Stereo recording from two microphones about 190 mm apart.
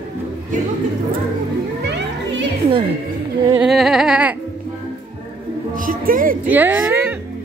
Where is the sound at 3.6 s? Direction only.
Centre (ahead or behind).